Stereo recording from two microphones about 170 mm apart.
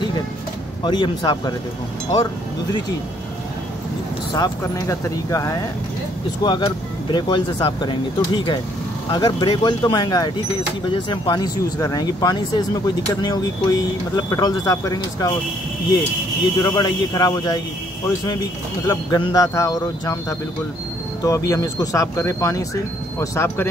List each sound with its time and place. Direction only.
0.8 s speech: 25° left (ahead or behind)
4.4 s speech: 20° left (ahead or behind)
16.6 s speech: 25° left (ahead or behind)
18.9 s speech: 25° left (ahead or behind)